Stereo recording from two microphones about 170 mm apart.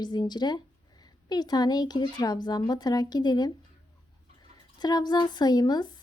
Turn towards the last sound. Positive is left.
turn(degrees=25)  # may be behind; listen again after turning